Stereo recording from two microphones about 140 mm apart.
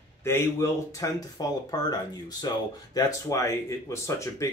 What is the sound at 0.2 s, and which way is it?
Speech, 20° left (ahead or behind).